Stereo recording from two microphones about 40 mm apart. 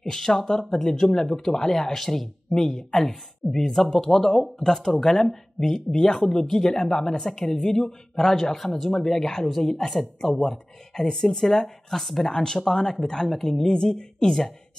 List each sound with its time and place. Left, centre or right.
0.0 s speech: centre